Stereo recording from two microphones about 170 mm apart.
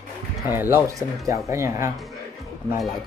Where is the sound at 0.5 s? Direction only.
15° right (ahead or behind).